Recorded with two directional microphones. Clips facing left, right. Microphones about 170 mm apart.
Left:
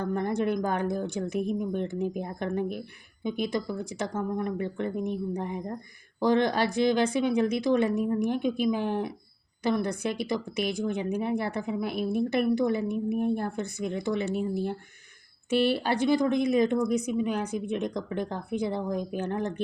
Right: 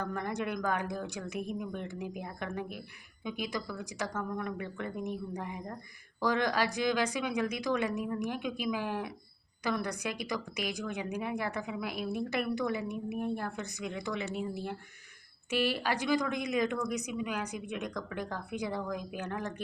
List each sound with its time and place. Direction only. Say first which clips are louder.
0.0 s a woman's voice: left 7 dB; 30° left (ahead or behind)